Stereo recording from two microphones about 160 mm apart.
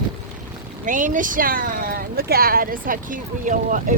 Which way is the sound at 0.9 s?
55° right (ahead or behind).